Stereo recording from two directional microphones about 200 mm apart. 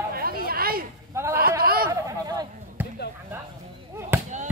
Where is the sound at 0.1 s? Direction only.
45° right (ahead or behind).